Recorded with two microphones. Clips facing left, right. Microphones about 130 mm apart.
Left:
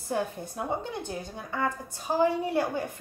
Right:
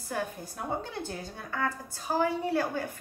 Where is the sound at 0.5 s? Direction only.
15° left (ahead or behind).